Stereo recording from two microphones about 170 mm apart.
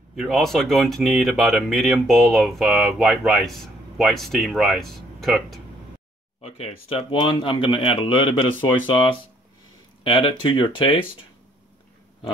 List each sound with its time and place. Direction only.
0.1 s speech: centre (ahead or behind)
6.4 s speech: 35° left (ahead or behind)